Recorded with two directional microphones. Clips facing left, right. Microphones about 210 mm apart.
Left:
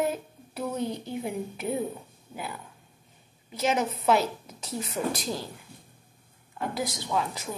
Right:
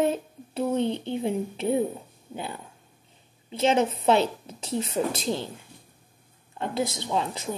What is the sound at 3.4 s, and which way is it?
A woman's voice, 25° right (ahead or behind).